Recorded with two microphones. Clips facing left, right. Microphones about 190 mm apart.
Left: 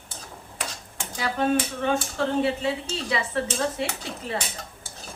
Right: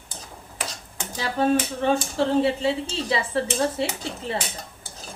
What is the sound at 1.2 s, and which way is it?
Speech, 30° right (ahead or behind).